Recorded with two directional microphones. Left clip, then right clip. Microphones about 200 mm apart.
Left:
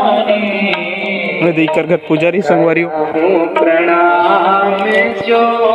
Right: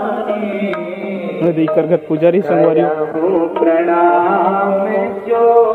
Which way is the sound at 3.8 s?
30° left (ahead or behind).